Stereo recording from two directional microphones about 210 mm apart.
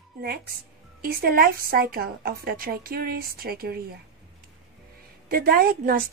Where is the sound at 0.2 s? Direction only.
45° right (ahead or behind).